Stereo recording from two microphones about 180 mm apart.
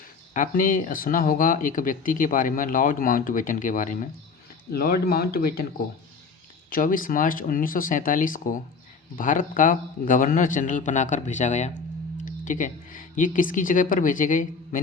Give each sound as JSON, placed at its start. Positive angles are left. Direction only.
{"t": 0.3, "sound": "a man's voice", "side_deg": 50}
{"t": 4.7, "sound": "speech", "side_deg": 60}
{"t": 6.7, "sound": "a man's voice", "side_deg": 50}